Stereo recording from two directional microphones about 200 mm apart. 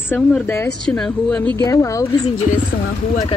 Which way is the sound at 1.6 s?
15° left (ahead or behind).